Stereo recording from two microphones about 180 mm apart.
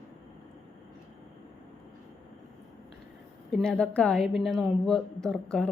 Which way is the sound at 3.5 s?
5° left (ahead or behind).